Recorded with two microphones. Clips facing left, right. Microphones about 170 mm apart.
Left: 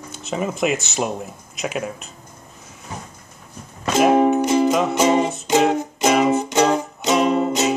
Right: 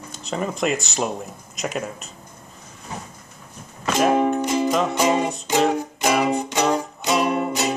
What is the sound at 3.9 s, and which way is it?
Music, 15° left (ahead or behind).